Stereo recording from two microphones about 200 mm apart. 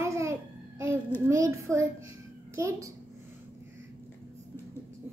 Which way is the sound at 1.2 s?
15° right (ahead or behind).